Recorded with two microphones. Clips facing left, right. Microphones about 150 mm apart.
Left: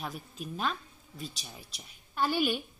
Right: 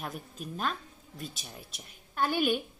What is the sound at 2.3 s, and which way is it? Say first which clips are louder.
Speech: right 2 dB; 50° right (ahead or behind).